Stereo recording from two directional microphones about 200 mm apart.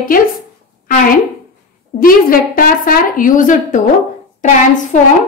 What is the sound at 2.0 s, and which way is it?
Speech, 45° left (ahead or behind).